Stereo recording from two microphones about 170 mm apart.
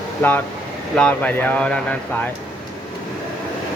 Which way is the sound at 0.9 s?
5° left (ahead or behind).